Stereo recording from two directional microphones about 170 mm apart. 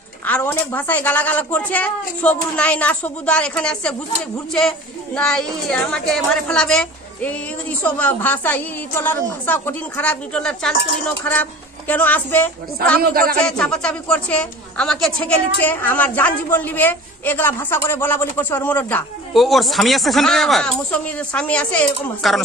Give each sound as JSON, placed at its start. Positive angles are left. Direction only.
{"t": 0.3, "sound": "a woman's voice", "side_deg": 10}
{"t": 11.9, "sound": "a woman's voice", "side_deg": 10}
{"t": 13.0, "sound": "speech", "side_deg": -60}
{"t": 13.4, "sound": "a woman's voice", "side_deg": 5}
{"t": 19.3, "sound": "speech", "side_deg": 0}